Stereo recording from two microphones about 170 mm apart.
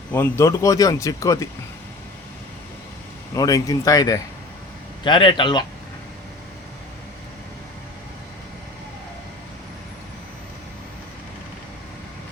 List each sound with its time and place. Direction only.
0.1 s speech: 15° left (ahead or behind)
3.3 s speech: 20° left (ahead or behind)